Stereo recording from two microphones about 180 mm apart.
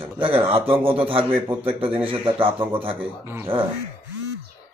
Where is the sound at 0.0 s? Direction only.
30° right (ahead or behind).